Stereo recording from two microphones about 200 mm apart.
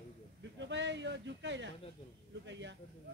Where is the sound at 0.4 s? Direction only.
65° right (ahead or behind).